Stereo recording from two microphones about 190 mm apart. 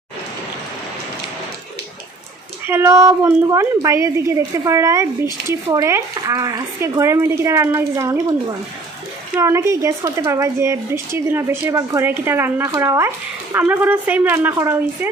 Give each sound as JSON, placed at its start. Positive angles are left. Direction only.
{"t": 2.6, "sound": "speech", "side_deg": -15}